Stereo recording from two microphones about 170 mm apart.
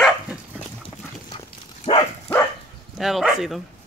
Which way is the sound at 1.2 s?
30° left (ahead or behind).